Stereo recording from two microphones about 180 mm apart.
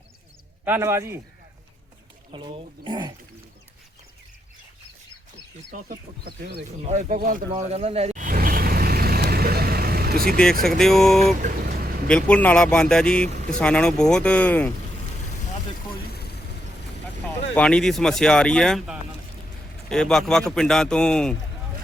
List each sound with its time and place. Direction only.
0.6 s a man's voice: 10° right (ahead or behind)
2.3 s speech: 25° right (ahead or behind)
5.7 s speech: 50° right (ahead or behind)
7.3 s vehicle: 45° right (ahead or behind)
10.6 s speech: centre (ahead or behind)
11.4 s vehicle: 55° right (ahead or behind)
12.0 s speech: 5° left (ahead or behind)
17.5 s speech: 5° left (ahead or behind)